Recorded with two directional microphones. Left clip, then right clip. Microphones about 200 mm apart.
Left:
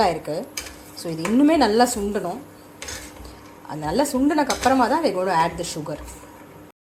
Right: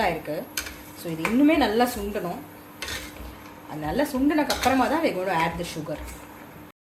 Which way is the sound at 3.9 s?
35° left (ahead or behind).